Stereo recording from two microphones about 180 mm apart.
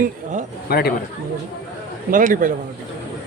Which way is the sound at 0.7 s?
60° left (ahead or behind).